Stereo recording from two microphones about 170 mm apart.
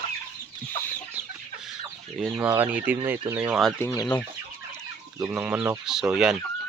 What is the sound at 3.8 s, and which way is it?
Chicken, 15° left (ahead or behind).